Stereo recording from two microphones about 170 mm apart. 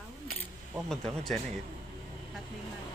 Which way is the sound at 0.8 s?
Centre (ahead or behind).